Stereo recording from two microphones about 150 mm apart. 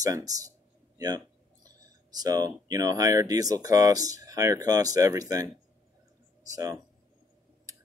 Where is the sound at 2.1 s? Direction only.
25° right (ahead or behind).